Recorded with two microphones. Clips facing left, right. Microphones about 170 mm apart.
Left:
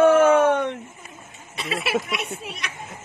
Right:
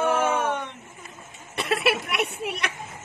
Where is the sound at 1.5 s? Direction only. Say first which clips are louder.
Right 1 dB; 60° right (ahead or behind).